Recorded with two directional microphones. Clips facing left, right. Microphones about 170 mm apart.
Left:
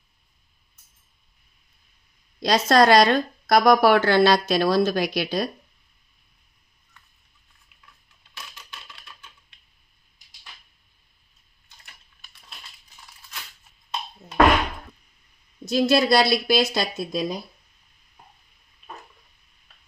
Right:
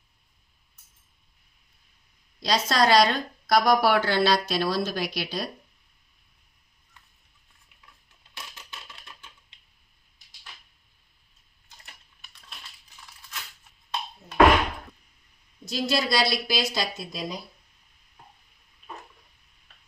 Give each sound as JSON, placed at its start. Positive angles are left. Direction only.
{"t": 2.4, "sound": "a woman's voice", "side_deg": 50}
{"t": 15.6, "sound": "speech", "side_deg": 50}